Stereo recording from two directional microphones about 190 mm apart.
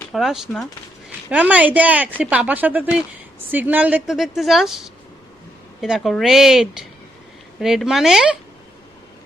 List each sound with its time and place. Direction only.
0.1 s speech: centre (ahead or behind)